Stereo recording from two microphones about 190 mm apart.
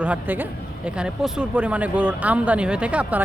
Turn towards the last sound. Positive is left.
turn(degrees=-5)  # may be behind; listen again after turning